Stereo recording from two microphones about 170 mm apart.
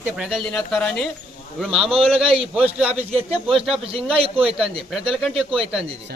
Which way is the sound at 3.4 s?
Centre (ahead or behind).